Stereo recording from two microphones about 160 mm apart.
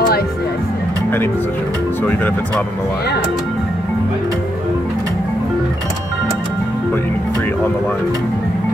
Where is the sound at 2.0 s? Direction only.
10° left (ahead or behind).